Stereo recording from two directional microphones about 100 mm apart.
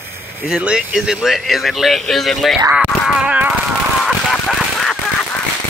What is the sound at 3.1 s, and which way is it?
Speech, 10° right (ahead or behind).